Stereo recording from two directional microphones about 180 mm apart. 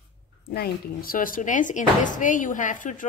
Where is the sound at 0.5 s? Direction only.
55° left (ahead or behind).